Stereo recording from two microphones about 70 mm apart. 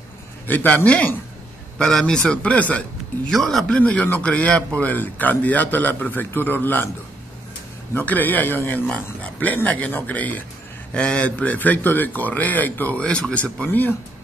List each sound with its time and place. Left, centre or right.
0.5 s a man's voice: left
1.8 s a man's voice: centre
3.3 s a man's voice: centre; by 6.9 s left
7.9 s a man's voice: left